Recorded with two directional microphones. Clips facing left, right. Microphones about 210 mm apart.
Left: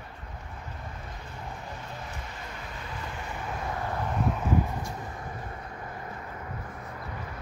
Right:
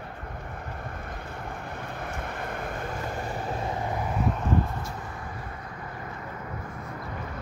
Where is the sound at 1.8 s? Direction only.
55° right (ahead or behind); by 3.7 s 30° right (ahead or behind).